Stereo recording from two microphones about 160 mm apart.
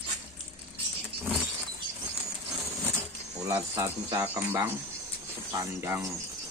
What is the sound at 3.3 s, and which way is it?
Speech, 20° right (ahead or behind).